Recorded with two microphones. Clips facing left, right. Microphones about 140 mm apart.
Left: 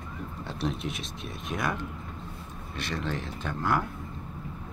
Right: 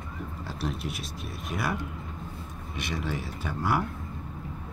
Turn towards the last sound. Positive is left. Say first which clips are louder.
# even
turn(degrees=-10)  # may be behind; listen again after turning